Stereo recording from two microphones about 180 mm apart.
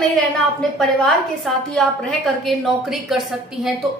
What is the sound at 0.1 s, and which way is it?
A woman's voice, 5° left (ahead or behind).